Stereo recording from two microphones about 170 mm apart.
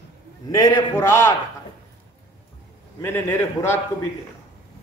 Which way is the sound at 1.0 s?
15° left (ahead or behind).